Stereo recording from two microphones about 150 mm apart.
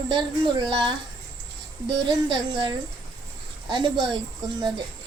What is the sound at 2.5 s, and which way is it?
Speech, 30° right (ahead or behind).